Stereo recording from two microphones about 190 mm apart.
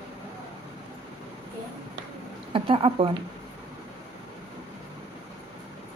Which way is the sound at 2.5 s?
30° right (ahead or behind).